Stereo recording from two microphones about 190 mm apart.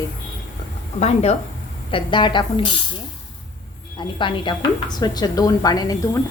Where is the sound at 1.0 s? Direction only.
35° left (ahead or behind).